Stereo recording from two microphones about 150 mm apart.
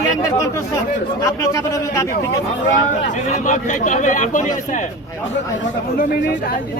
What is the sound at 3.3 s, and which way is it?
A man's voice, 55° left (ahead or behind).